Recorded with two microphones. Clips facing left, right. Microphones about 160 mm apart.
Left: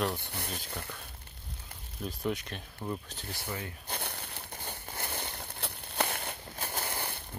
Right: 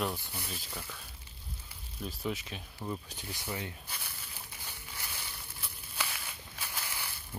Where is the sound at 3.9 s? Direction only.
65° left (ahead or behind).